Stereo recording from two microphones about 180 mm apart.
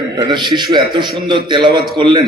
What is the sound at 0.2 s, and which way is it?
A man's voice, 25° right (ahead or behind).